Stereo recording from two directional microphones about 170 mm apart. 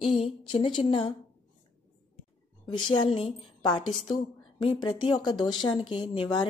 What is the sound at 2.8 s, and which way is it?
A woman's voice, 30° left (ahead or behind).